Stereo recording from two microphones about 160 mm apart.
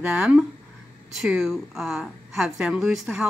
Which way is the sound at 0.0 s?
5° right (ahead or behind).